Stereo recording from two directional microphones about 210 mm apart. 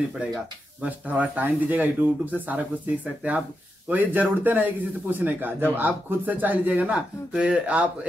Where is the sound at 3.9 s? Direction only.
10° right (ahead or behind).